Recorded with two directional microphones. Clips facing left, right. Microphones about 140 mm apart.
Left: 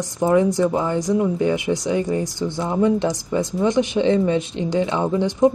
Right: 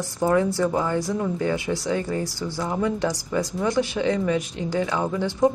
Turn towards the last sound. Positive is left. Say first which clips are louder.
# left 4 dB
turn(degrees=20)  # may be behind; listen again after turning